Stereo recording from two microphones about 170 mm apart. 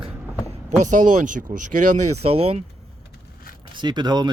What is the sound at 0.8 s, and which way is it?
Speech, 50° right (ahead or behind).